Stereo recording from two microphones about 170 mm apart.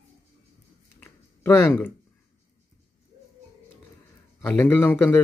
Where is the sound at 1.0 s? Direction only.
15° left (ahead or behind).